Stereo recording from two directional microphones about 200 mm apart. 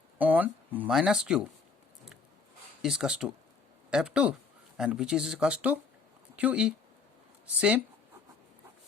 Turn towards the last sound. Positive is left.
turn(degrees=-5)  # may be behind; listen again after turning